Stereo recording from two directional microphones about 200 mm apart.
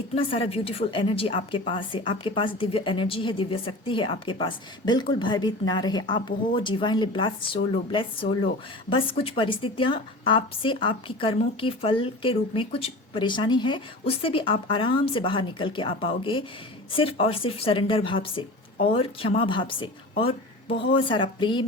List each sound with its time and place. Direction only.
0.1 s a woman's voice: 30° left (ahead or behind)